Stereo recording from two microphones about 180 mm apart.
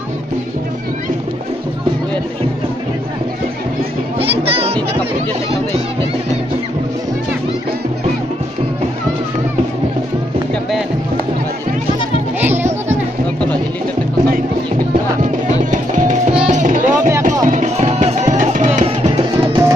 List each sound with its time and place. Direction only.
4.4 s music: 35° right (ahead or behind)
12.4 s music: 10° right (ahead or behind)
15.5 s music: 45° right (ahead or behind)